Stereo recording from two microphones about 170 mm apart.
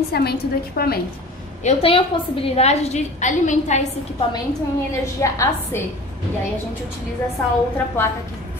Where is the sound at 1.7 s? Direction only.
35° left (ahead or behind).